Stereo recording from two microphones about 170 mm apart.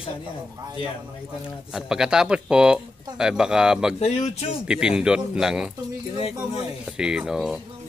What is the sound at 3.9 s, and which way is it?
Speech, 40° left (ahead or behind).